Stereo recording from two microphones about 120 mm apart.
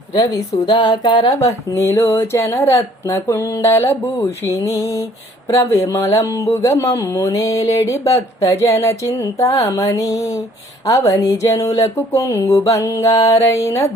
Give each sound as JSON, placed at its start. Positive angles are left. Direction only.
{"t": 0.1, "sound": "speech", "side_deg": 35}